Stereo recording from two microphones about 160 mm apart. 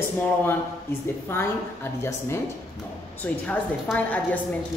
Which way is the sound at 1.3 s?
15° left (ahead or behind).